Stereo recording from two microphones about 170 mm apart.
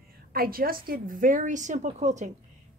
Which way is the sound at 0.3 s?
60° right (ahead or behind).